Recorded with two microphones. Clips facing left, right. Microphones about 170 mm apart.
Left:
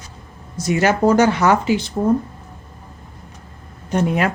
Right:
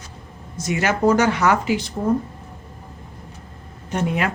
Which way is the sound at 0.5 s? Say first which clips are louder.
Left 5 dB; 35° left (ahead or behind).